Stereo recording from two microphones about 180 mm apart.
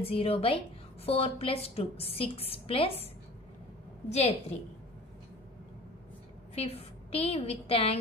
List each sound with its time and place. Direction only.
0.0 s a woman's voice: 30° left (ahead or behind)
4.1 s a woman's voice: 35° left (ahead or behind)
6.5 s a woman's voice: 35° left (ahead or behind)